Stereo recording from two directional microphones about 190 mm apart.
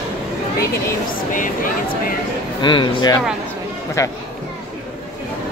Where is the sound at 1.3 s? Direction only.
45° left (ahead or behind).